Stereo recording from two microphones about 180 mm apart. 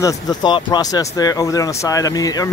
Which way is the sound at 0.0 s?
25° left (ahead or behind).